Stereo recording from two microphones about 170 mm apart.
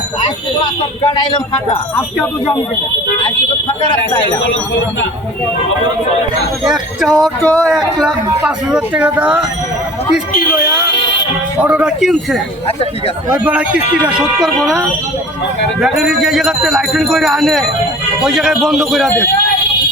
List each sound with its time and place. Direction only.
0.6 s speech: 25° left (ahead or behind)
3.8 s speech: 25° left (ahead or behind)
6.7 s a man's voice: centre (ahead or behind)
10.8 s music: 90° left
11.6 s a man's voice: 5° right (ahead or behind)
13.4 s a man's voice: 10° right (ahead or behind)